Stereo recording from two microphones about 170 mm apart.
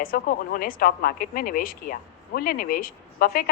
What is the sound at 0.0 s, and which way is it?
A woman's voice, 55° left (ahead or behind).